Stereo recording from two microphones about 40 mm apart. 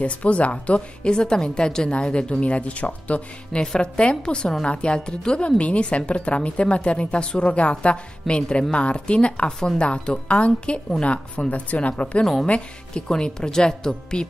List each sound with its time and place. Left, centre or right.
0.0 s speech: left
3.6 s speech: centre
13.1 s speech: centre